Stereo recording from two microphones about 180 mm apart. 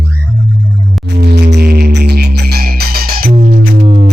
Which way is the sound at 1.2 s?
70° right (ahead or behind).